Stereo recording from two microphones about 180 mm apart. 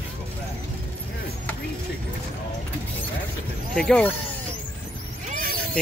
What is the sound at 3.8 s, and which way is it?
Speech, 5° left (ahead or behind).